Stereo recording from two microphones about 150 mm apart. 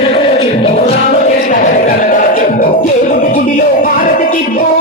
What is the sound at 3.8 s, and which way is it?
Music, 70° left (ahead or behind).